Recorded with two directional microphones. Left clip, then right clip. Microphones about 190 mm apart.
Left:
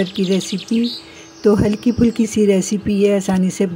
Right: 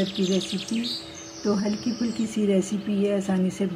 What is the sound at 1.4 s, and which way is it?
Speech, 55° left (ahead or behind).